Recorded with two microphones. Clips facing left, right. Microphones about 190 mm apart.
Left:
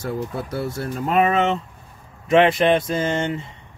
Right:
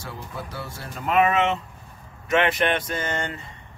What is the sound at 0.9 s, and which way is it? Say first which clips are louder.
Speech: left 1 dB; 35° left (ahead or behind).